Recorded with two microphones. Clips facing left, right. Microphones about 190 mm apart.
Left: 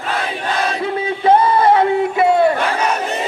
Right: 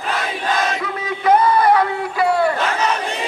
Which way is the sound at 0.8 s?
30° left (ahead or behind).